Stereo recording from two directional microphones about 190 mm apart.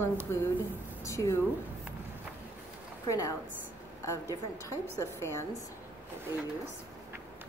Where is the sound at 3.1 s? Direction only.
15° left (ahead or behind).